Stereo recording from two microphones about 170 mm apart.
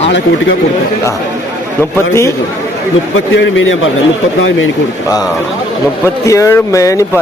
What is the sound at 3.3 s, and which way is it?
Speech, 90° left.